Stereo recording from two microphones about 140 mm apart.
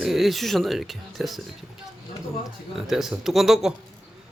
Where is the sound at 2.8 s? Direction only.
Centre (ahead or behind).